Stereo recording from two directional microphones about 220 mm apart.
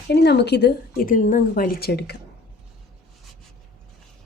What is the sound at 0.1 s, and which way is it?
A woman's voice, 50° left (ahead or behind).